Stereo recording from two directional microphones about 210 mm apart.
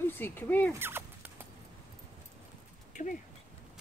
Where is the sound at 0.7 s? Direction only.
10° right (ahead or behind).